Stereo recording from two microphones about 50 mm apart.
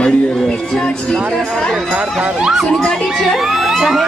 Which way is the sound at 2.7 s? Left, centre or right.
Centre.